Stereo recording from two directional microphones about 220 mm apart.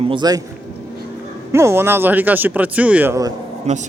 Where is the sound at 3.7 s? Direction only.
30° right (ahead or behind).